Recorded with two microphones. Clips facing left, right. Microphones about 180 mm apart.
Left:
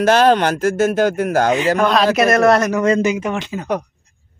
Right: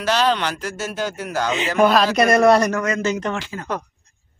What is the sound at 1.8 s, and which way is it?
Speech, 5° right (ahead or behind).